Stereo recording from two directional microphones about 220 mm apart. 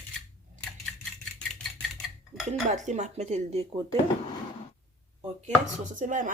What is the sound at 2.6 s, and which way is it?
Speech, 35° right (ahead or behind).